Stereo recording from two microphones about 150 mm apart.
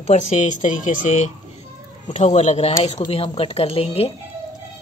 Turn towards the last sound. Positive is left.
turn(degrees=40)  # may be behind; listen again after turning